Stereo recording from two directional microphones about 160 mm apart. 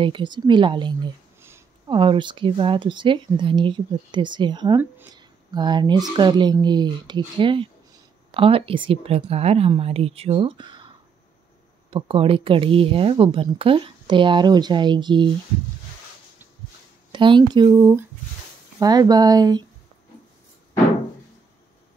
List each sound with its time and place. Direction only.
0.0 s speech: 30° right (ahead or behind)
11.9 s speech: 35° right (ahead or behind)
17.1 s speech: 30° right (ahead or behind)